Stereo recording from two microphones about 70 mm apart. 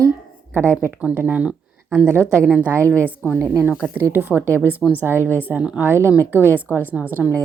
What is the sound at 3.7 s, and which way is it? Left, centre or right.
A woman's voice, right.